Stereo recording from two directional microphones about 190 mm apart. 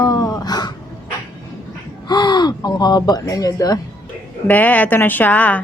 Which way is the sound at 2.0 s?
25° left (ahead or behind).